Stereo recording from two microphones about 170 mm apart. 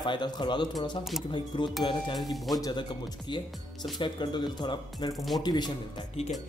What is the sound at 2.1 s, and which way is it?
Speech, centre (ahead or behind).